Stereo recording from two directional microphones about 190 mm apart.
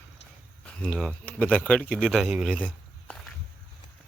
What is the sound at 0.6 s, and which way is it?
Speech, 5° left (ahead or behind).